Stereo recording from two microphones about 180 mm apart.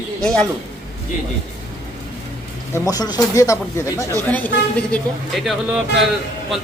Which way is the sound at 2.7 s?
20° left (ahead or behind).